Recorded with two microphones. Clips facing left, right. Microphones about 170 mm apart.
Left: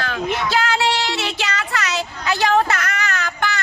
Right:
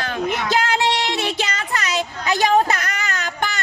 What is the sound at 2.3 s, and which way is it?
Speech, 20° right (ahead or behind).